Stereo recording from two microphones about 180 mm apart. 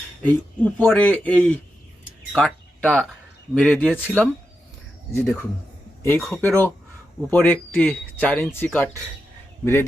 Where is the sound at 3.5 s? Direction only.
5° left (ahead or behind).